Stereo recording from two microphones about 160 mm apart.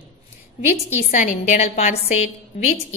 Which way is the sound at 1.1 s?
50° left (ahead or behind).